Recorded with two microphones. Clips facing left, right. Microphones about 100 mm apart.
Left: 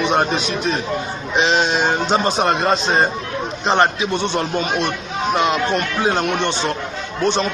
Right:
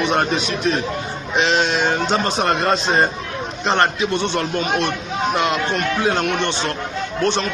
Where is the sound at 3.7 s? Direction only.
10° left (ahead or behind).